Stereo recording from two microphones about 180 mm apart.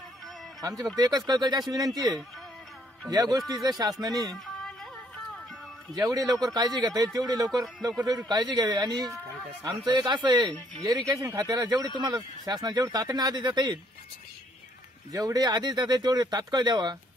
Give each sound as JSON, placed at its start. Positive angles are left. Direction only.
{"t": 0.6, "sound": "speech", "side_deg": -20}
{"t": 4.2, "sound": "music", "side_deg": 0}
{"t": 6.0, "sound": "speech", "side_deg": -20}
{"t": 15.1, "sound": "speech", "side_deg": -20}